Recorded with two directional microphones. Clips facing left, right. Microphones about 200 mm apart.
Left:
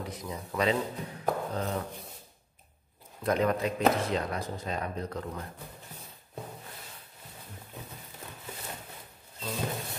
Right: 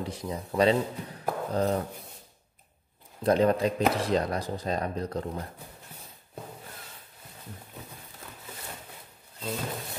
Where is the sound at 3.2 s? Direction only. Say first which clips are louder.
Right 4 dB; 30° right (ahead or behind).